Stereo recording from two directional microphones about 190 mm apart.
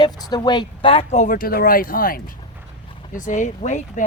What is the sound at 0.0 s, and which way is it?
Speech, 20° left (ahead or behind).